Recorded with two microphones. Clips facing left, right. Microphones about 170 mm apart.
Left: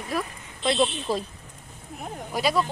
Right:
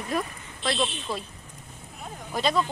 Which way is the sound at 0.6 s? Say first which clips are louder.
Left 5 dB; 25° left (ahead or behind).